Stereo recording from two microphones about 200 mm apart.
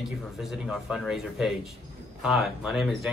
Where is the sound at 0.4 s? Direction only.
5° right (ahead or behind).